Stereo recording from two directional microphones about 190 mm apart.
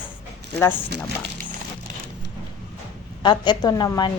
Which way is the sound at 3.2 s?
25° left (ahead or behind).